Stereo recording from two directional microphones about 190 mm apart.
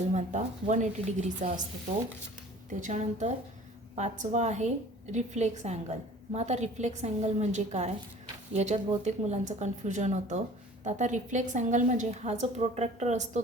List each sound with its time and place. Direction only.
0.1 s a woman's voice: 40° right (ahead or behind)
2.8 s a woman's voice: 35° right (ahead or behind)